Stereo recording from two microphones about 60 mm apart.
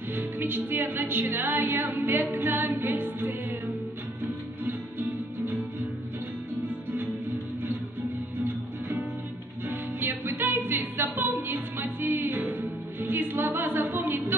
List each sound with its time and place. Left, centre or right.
0.1 s a capella: right
4.6 s music: right
8.5 s music: right